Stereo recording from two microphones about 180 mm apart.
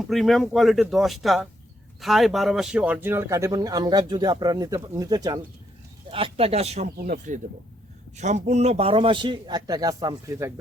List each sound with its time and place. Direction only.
0.1 s speech: centre (ahead or behind); by 5.4 s 20° right (ahead or behind)
6.1 s speech: 30° right (ahead or behind)
6.9 s speech: 60° right (ahead or behind)
8.1 s speech: 40° right (ahead or behind); by 10.5 s 15° right (ahead or behind)